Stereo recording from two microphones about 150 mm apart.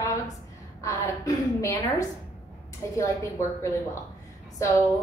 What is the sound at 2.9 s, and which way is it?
Speech, 20° left (ahead or behind).